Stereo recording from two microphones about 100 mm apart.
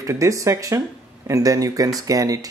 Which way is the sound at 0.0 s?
30° right (ahead or behind).